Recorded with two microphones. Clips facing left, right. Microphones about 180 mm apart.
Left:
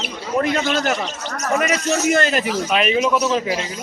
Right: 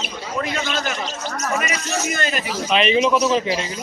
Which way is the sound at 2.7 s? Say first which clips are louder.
Right 2 dB; 5° left (ahead or behind).